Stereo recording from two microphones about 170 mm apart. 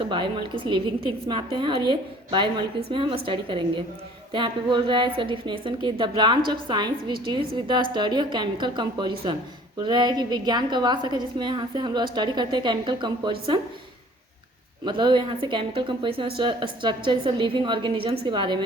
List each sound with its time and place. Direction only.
0.0 s a woman's voice: 30° right (ahead or behind)
14.8 s a woman's voice: 25° right (ahead or behind)